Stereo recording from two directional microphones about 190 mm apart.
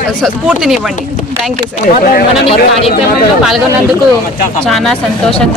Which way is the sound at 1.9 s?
50° left (ahead or behind).